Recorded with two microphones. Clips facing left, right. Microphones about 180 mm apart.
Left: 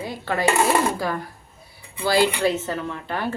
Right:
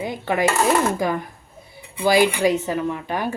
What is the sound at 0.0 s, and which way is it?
Dishes, 20° right (ahead or behind).